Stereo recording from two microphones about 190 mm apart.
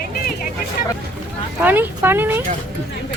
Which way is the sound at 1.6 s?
10° right (ahead or behind).